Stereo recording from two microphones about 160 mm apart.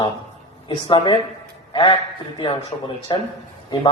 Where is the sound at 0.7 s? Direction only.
30° left (ahead or behind).